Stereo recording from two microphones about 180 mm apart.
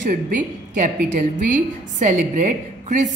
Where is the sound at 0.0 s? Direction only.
45° right (ahead or behind).